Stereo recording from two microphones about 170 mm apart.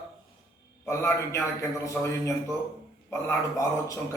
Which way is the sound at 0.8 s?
15° left (ahead or behind).